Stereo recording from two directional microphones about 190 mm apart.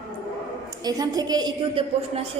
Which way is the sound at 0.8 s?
20° right (ahead or behind).